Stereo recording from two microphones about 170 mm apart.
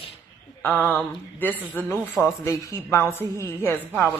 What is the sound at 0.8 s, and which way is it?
A woman's voice, 10° left (ahead or behind).